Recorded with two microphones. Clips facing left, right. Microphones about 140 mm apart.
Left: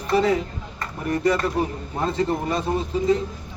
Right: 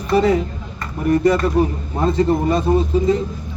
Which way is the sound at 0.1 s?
15° right (ahead or behind).